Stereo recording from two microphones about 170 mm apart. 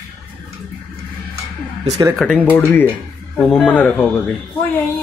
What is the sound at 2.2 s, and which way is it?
Speech, 10° left (ahead or behind).